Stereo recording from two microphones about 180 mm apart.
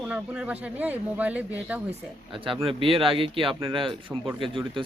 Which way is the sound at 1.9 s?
30° right (ahead or behind).